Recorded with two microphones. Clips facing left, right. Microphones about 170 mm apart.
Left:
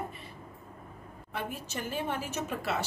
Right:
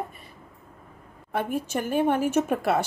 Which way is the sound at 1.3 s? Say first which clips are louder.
Right 10 dB; 55° right (ahead or behind).